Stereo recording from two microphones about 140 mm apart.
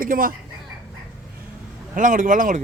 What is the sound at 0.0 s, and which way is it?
Speech, 90° right.